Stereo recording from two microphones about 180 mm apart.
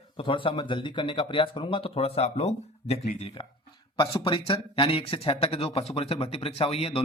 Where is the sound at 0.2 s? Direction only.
30° left (ahead or behind).